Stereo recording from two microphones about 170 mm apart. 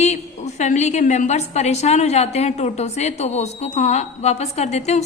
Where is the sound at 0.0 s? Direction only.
45° left (ahead or behind).